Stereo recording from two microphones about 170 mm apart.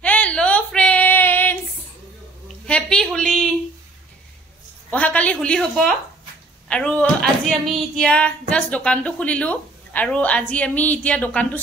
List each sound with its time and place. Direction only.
0.0 s female singing: 10° left (ahead or behind)
2.4 s a sound: 5° left (ahead or behind)
4.9 s speech: 10° left (ahead or behind)